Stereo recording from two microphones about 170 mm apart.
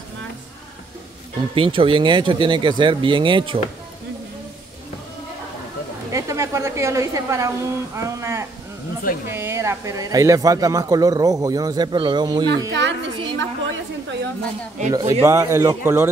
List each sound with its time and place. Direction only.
1.5 s a man's voice: 30° right (ahead or behind)
6.1 s a woman's voice: 20° right (ahead or behind)
12.7 s a sound: 90° right
14.9 s a man's voice: 20° right (ahead or behind)